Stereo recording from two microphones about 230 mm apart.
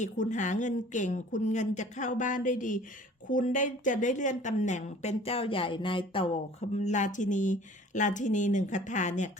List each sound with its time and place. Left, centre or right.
0.0 s speech: left